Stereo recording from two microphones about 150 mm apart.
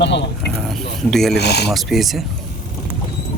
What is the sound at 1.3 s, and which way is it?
Speech, 90° left.